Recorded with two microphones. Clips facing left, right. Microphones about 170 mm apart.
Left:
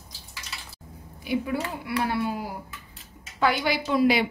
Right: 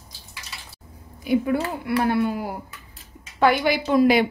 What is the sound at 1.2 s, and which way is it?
A woman's voice, 50° right (ahead or behind).